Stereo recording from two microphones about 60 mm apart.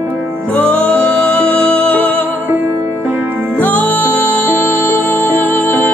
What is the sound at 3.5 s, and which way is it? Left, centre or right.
Music, left.